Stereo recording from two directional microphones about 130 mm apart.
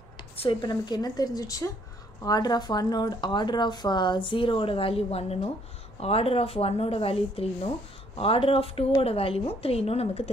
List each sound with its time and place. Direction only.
0.4 s a woman's voice: 35° left (ahead or behind)